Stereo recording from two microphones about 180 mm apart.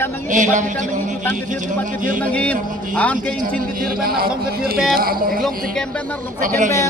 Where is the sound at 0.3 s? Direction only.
45° right (ahead or behind).